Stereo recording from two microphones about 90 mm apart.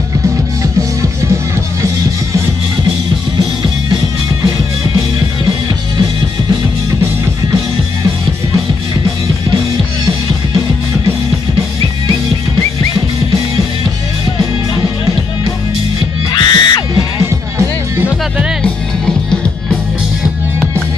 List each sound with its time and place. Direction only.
16.3 s music: 50° left (ahead or behind)
17.2 s music: 30° right (ahead or behind)